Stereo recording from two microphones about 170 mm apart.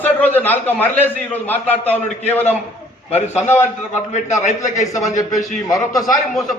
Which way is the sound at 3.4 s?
15° left (ahead or behind).